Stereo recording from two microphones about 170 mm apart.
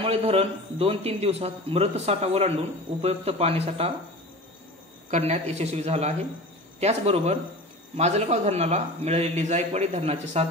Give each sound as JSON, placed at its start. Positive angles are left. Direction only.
{"t": 0.0, "sound": "a man's voice", "side_deg": -35}
{"t": 5.1, "sound": "a man's voice", "side_deg": -40}